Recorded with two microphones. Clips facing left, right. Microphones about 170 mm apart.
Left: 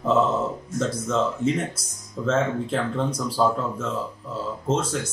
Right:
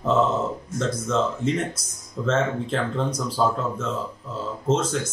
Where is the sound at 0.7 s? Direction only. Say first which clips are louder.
Even; 5° left (ahead or behind).